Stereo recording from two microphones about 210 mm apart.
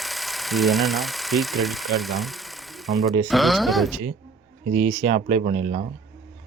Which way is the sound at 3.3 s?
Centre (ahead or behind).